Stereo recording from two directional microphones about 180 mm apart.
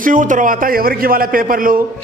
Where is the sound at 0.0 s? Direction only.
45° right (ahead or behind).